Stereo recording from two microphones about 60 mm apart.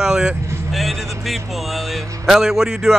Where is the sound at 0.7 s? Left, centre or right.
Centre.